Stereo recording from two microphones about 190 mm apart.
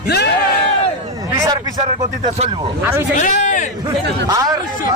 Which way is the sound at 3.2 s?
40° left (ahead or behind).